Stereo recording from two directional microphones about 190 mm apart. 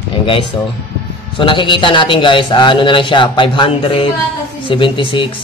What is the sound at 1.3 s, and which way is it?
A man's voice, 25° left (ahead or behind).